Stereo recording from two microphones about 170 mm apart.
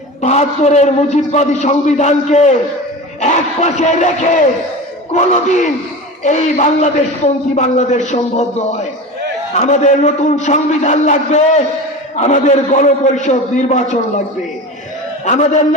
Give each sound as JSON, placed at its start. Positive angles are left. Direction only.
{"t": 0.2, "sound": "a man's voice", "side_deg": 40}
{"t": 15.2, "sound": "a man's voice", "side_deg": 40}